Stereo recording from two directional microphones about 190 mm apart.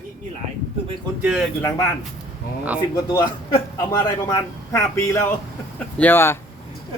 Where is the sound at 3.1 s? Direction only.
20° left (ahead or behind).